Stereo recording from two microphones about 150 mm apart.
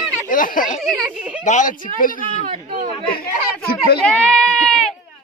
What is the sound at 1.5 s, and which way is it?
Speech, 60° left (ahead or behind).